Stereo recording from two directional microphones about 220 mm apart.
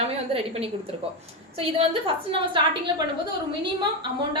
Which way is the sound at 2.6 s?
20° right (ahead or behind).